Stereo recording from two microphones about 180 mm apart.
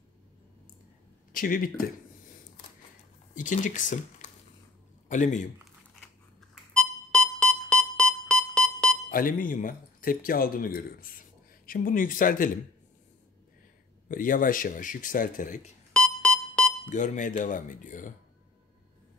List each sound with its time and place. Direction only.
1.3 s speech: 50° left (ahead or behind)
3.3 s a man's voice: 45° left (ahead or behind)
6.5 s keyboard: 5° left (ahead or behind)
9.1 s speech: 50° left (ahead or behind)
14.0 s speech: 50° left (ahead or behind)
15.9 s keyboard: 5° left (ahead or behind)
16.9 s speech: 45° left (ahead or behind)